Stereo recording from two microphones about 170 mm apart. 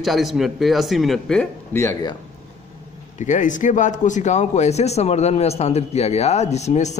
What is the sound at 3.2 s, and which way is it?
A man's voice, 45° left (ahead or behind).